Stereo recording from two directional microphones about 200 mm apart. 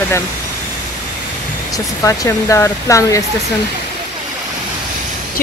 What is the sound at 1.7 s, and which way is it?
Speech, 15° left (ahead or behind).